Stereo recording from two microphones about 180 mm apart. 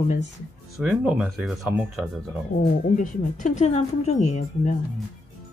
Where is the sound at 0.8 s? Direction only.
5° right (ahead or behind).